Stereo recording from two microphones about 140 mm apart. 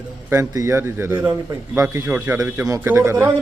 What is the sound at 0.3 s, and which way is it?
A man's voice, 20° right (ahead or behind).